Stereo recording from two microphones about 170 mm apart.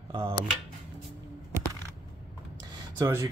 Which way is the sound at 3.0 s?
20° right (ahead or behind).